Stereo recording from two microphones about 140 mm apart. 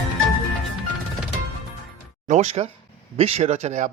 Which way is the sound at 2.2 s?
55° right (ahead or behind).